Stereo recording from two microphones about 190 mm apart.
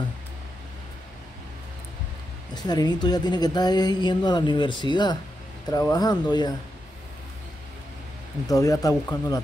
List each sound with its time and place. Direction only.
2.5 s speech: 20° left (ahead or behind)
8.5 s speech: 20° left (ahead or behind)